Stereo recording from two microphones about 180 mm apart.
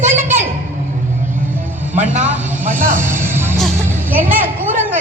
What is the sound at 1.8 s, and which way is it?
Music, 10° right (ahead or behind).